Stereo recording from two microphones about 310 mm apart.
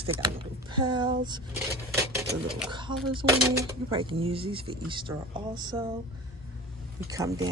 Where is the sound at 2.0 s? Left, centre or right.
Centre.